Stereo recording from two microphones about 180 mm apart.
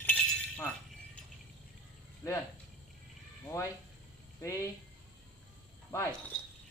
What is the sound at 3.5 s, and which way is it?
Speech, 20° left (ahead or behind).